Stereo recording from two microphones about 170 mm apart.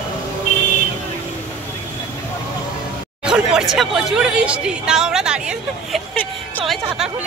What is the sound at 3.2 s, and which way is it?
Speech, 5° right (ahead or behind).